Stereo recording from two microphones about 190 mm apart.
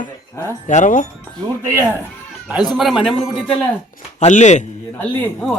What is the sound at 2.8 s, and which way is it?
Speech, centre (ahead or behind).